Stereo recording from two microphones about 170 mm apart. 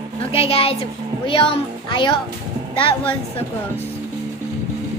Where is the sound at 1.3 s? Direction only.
30° left (ahead or behind).